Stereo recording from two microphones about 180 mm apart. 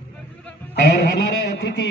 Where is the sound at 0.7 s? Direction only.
70° left (ahead or behind).